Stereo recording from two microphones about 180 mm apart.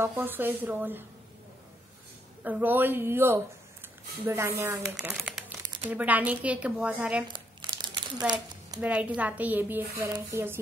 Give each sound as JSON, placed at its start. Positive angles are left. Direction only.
{"t": 0.0, "sound": "a woman's voice", "side_deg": -10}
{"t": 2.4, "sound": "a woman's voice", "side_deg": -10}
{"t": 7.2, "sound": "crumpling", "side_deg": -25}
{"t": 8.3, "sound": "speech", "side_deg": -25}
{"t": 8.8, "sound": "a woman's voice", "side_deg": -10}